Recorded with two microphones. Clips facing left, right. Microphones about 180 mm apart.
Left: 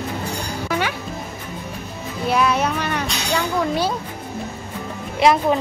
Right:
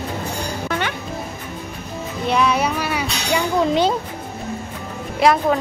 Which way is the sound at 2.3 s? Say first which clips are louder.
Even; centre (ahead or behind).